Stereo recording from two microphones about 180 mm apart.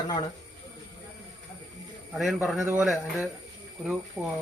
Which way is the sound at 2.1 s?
Centre (ahead or behind).